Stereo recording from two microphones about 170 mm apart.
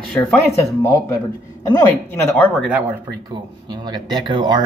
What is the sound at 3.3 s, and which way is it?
Speech, 25° right (ahead or behind).